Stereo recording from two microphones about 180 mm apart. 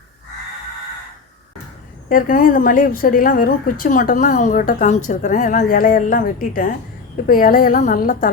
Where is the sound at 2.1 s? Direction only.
50° left (ahead or behind).